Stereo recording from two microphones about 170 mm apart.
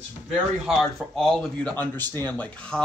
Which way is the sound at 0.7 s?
Centre (ahead or behind).